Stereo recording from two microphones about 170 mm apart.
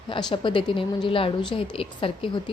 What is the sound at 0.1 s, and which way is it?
A woman's voice, 30° left (ahead or behind).